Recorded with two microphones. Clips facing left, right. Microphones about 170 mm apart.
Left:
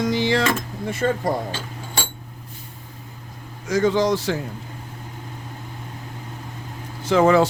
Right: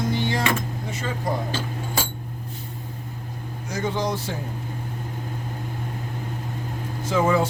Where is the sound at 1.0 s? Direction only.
55° left (ahead or behind).